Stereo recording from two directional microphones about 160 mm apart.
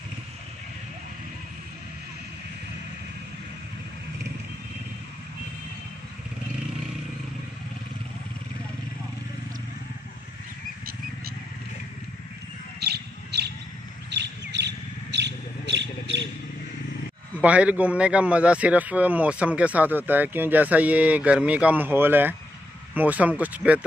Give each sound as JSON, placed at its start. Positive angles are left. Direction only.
{"t": 12.8, "sound": "bird", "side_deg": -90}
{"t": 17.4, "sound": "speech", "side_deg": -10}